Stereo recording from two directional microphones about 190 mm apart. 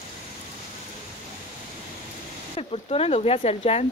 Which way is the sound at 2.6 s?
30° left (ahead or behind).